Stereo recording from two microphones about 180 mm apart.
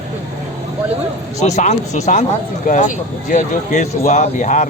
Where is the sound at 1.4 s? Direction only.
40° left (ahead or behind).